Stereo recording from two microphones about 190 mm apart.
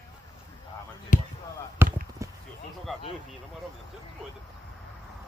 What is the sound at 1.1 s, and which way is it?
Speech, 45° left (ahead or behind).